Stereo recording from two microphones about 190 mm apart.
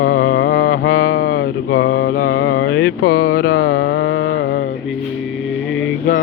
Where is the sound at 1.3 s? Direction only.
90° left.